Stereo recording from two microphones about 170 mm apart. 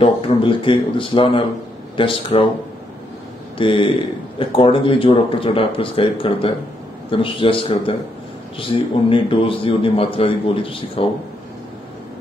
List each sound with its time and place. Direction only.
0.0 s a man's voice: 30° left (ahead or behind)
3.5 s a man's voice: 30° left (ahead or behind)